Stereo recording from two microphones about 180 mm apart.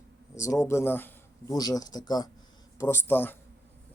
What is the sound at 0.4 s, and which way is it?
A man's voice, 15° left (ahead or behind).